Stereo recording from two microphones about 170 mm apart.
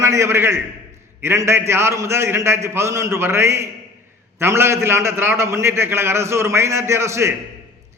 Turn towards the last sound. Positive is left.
turn(degrees=-15)  # may be behind; listen again after turning